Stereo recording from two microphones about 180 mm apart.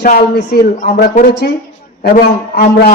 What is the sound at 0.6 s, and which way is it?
A man's voice, 50° left (ahead or behind).